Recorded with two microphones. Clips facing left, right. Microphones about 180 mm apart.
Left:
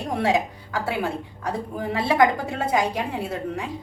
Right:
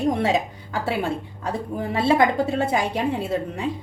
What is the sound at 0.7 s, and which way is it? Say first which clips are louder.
A woman's voice: right 1 dB; 25° right (ahead or behind).